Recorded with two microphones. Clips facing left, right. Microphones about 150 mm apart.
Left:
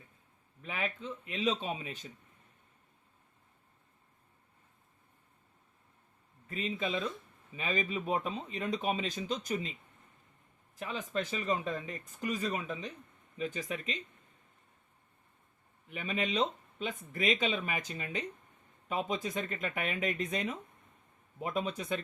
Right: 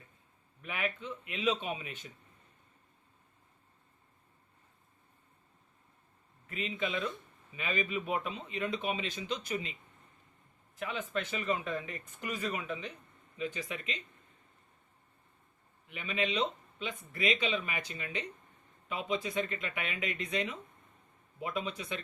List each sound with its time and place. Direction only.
0.6 s speech: 35° left (ahead or behind)
6.5 s speech: 35° left (ahead or behind)
10.8 s speech: 35° left (ahead or behind)
15.9 s speech: 40° left (ahead or behind)